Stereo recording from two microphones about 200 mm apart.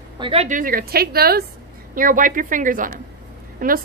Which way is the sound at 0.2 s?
30° right (ahead or behind).